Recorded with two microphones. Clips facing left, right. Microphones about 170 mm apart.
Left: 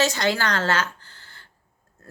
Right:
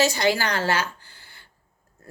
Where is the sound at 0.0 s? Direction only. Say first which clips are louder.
Right 1 dB; 10° right (ahead or behind).